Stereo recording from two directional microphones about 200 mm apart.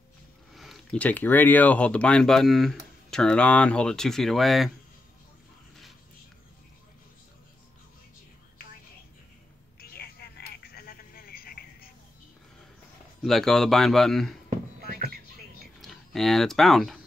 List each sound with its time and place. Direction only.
0.5 s speech: centre (ahead or behind)
9.8 s telephone: 50° left (ahead or behind)
13.2 s speech: centre (ahead or behind)
14.8 s music: 50° right (ahead or behind)
15.8 s speech: centre (ahead or behind)